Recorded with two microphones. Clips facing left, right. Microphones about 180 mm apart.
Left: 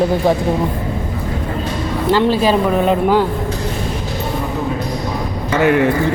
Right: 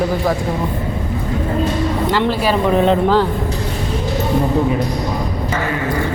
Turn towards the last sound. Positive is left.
turn(degrees=70)  # may be behind; listen again after turning